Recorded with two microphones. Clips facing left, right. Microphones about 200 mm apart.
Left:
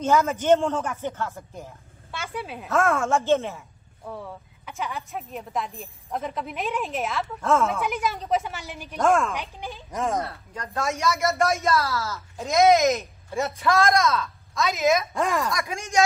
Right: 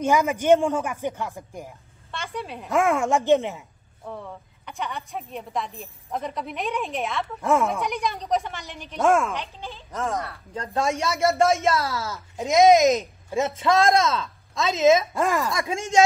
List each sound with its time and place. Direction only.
0.0 s speech: 15° right (ahead or behind)
2.0 s a sound: 5° left (ahead or behind)
2.7 s speech: 15° right (ahead or behind)
4.0 s a woman's voice: centre (ahead or behind)
7.3 s speech: 15° right (ahead or behind)
7.8 s a woman's voice: centre (ahead or behind)
9.3 s speech: 15° left (ahead or behind)
10.5 s speech: 30° right (ahead or behind)
15.1 s a woman's voice: centre (ahead or behind)
15.5 s speech: 30° right (ahead or behind)